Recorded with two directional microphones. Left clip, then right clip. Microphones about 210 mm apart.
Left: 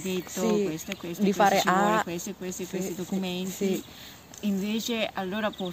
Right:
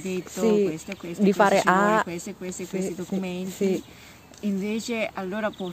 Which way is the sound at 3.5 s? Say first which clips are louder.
Right 5 dB; 50° right (ahead or behind).